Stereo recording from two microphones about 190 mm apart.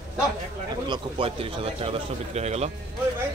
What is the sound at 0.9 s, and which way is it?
A man's voice, 30° right (ahead or behind).